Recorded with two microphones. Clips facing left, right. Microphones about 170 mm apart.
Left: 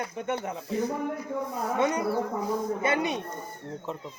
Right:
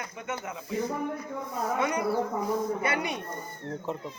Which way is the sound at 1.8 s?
25° left (ahead or behind).